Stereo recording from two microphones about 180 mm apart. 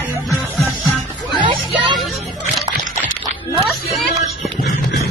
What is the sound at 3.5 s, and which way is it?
Speech, centre (ahead or behind).